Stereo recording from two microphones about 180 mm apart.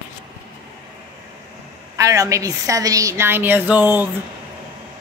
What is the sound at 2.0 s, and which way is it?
Speech, 20° right (ahead or behind).